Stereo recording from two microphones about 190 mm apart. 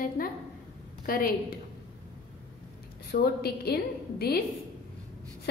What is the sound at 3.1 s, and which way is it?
Speech, 55° left (ahead or behind).